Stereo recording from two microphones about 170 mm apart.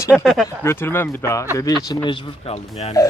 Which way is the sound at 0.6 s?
15° left (ahead or behind).